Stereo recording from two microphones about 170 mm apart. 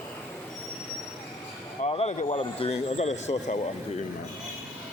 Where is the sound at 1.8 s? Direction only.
35° left (ahead or behind).